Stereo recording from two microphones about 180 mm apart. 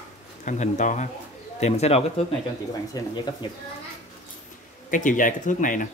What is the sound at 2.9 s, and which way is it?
Speech, 25° left (ahead or behind).